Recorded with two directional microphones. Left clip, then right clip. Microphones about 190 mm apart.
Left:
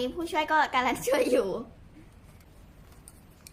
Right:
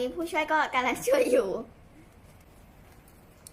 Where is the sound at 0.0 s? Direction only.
15° left (ahead or behind).